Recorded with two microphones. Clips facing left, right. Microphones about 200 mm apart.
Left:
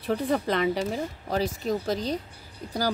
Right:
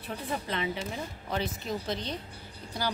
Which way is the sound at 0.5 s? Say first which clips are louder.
Left 8 dB; 40° left (ahead or behind).